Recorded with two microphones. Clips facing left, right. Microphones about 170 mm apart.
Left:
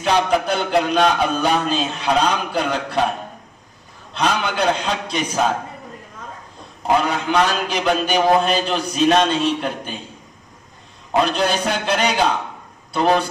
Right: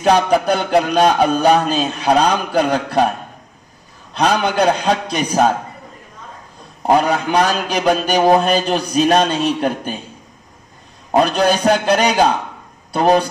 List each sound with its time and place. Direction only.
0.0 s music: 40° right (ahead or behind)
4.1 s a man's voice: 40° right (ahead or behind)
6.9 s a man's voice: 40° right (ahead or behind)
11.1 s music: 45° right (ahead or behind)